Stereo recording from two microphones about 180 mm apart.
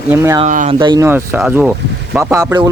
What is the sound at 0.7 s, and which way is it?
Speech, 25° right (ahead or behind).